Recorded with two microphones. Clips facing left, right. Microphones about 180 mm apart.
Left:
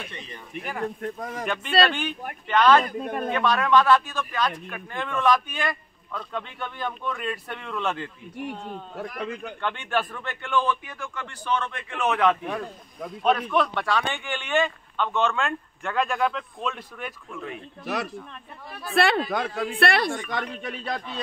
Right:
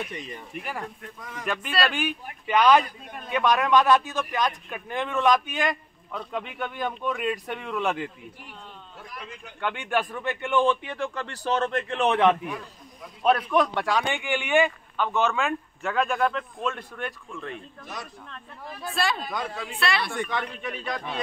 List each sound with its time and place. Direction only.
0.6 s a man's voice: centre (ahead or behind)
1.0 s speech: 45° left (ahead or behind)
1.4 s a man's voice: 5° right (ahead or behind)
3.0 s speech: 50° left (ahead or behind)
3.3 s a man's voice: 15° right (ahead or behind)
8.9 s speech: 60° left (ahead or behind)
9.6 s a man's voice: 15° right (ahead or behind)
12.4 s speech: 65° left (ahead or behind)
13.2 s a man's voice: 10° right (ahead or behind)
17.8 s speech: 70° left (ahead or behind)
18.9 s speech: 60° left (ahead or behind)
20.2 s speech: 40° left (ahead or behind)